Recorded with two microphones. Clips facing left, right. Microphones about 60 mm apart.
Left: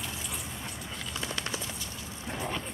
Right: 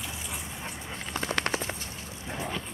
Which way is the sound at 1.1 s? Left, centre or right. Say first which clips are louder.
Right 7 dB; right.